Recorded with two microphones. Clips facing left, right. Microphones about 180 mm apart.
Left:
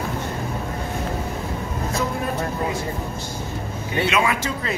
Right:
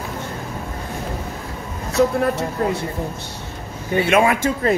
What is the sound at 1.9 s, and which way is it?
Speech, 70° right (ahead or behind).